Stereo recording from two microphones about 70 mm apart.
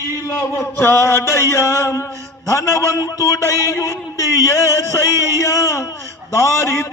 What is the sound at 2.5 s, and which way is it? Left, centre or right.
A man's voice, left.